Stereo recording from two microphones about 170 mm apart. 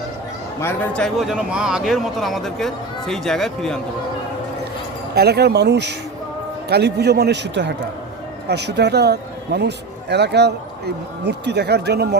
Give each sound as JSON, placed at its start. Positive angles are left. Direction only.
{"t": 0.6, "sound": "speech", "side_deg": 10}
{"t": 5.1, "sound": "a man's voice", "side_deg": -70}
{"t": 8.4, "sound": "speech", "side_deg": -80}